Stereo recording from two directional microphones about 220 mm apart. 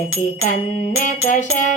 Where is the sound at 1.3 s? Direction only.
35° left (ahead or behind).